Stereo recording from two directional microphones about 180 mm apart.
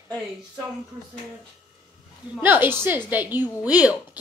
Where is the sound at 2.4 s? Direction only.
10° right (ahead or behind).